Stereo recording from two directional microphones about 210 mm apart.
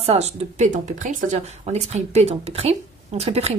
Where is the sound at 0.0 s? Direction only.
30° right (ahead or behind).